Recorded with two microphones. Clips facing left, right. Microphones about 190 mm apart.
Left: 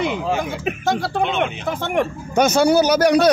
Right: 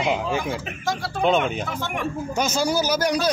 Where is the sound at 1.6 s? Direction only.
55° left (ahead or behind).